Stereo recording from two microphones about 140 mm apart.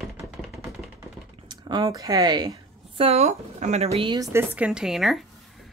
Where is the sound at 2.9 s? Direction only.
50° right (ahead or behind).